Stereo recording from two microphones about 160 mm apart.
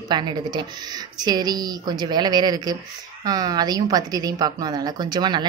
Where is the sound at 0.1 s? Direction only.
30° right (ahead or behind).